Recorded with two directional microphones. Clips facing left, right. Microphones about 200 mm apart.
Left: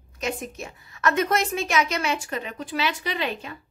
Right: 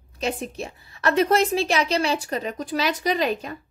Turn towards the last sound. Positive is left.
turn(degrees=-40)  # may be behind; listen again after turning